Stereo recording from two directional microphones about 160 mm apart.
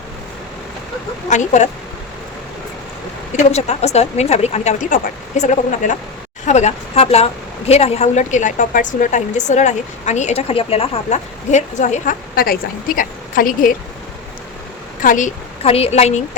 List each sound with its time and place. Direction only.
1.3 s a woman's voice: 50° left (ahead or behind)
3.3 s a woman's voice: 40° left (ahead or behind); by 13.7 s 60° left (ahead or behind)
15.0 s a woman's voice: 55° left (ahead or behind)
15.6 s speech: 40° left (ahead or behind)